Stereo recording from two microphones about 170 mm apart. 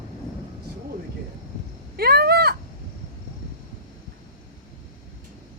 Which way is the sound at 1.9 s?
65° right (ahead or behind).